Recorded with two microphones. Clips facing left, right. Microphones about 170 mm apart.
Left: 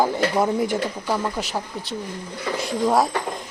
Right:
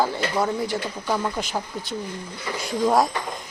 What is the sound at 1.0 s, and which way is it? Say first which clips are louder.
Speech: left 1 dB; 5° left (ahead or behind).